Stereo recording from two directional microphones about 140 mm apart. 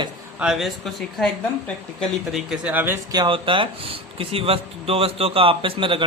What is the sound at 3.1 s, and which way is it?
Speech, 35° right (ahead or behind).